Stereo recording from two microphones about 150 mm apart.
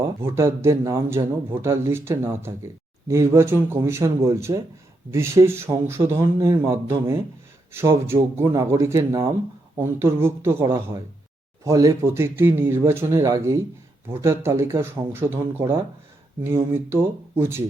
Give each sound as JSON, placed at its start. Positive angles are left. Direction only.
{"t": 0.2, "sound": "speech", "side_deg": -20}